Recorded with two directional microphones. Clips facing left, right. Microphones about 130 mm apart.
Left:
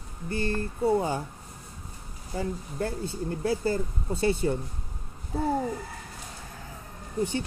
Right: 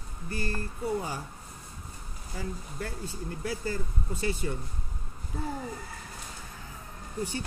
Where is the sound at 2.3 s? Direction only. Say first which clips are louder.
Left 6 dB; 30° left (ahead or behind).